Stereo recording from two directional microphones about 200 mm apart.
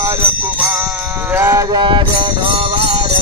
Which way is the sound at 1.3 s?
15° right (ahead or behind).